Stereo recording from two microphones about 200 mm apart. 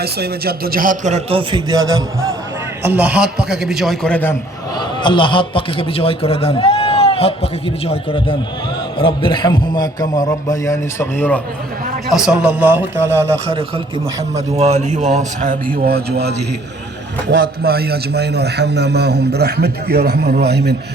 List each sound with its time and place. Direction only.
0.0 s a man's voice: 50° right (ahead or behind); by 1.8 s 20° right (ahead or behind)
2.8 s a man's voice: 10° right (ahead or behind); by 4.4 s 10° left (ahead or behind)
4.8 s a man's voice: 25° left (ahead or behind)
12.1 s a man's voice: 5° right (ahead or behind)
13.5 s a man's voice: 25° right (ahead or behind)
15.7 s a man's voice: 50° right (ahead or behind)